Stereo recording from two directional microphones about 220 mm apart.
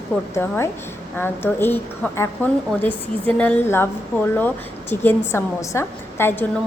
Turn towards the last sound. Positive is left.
turn(degrees=10)  # may be behind; listen again after turning